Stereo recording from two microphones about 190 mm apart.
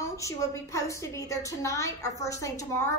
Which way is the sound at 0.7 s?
15° left (ahead or behind).